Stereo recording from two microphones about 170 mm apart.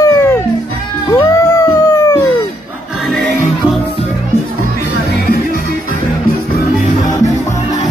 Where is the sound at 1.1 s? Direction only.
20° left (ahead or behind).